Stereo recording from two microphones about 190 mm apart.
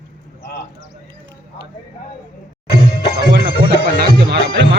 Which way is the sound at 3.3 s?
60° right (ahead or behind).